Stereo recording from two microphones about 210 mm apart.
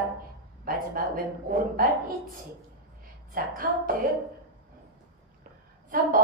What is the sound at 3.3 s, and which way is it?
Music, 45° right (ahead or behind).